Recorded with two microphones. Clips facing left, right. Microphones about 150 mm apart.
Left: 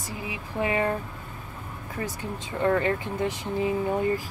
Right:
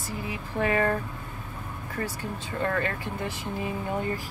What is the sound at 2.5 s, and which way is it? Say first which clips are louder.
Speech: left 5 dB; 20° left (ahead or behind).